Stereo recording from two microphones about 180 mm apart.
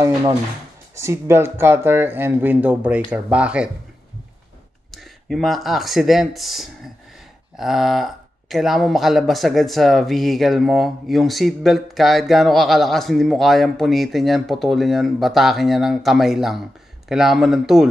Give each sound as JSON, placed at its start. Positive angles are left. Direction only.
{"t": 0.0, "sound": "speech", "side_deg": -20}
{"t": 4.9, "sound": "speech", "side_deg": 0}